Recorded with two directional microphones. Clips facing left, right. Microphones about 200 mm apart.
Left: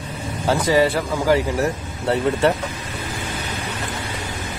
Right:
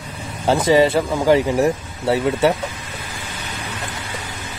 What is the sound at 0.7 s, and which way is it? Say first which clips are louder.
Speech: right 4 dB; 20° right (ahead or behind).